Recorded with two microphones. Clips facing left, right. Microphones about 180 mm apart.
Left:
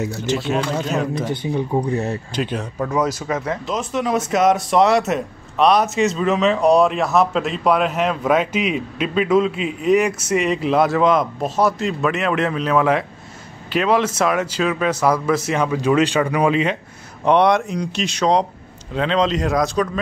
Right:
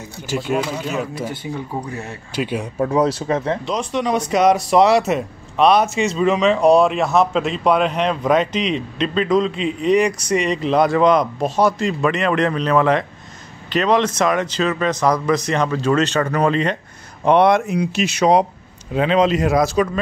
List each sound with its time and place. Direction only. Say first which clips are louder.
0.3 s speech: right 1 dB; 10° right (ahead or behind)
1.3 s speech: left 6 dB; 20° left (ahead or behind)
2.3 s speech: right 6 dB; 10° right (ahead or behind)
2.8 s speech: right 4 dB; 30° right (ahead or behind)
3.6 s speech: right 1 dB; 5° left (ahead or behind)